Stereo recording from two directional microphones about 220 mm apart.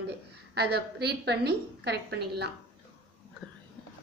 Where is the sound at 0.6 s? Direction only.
50° right (ahead or behind).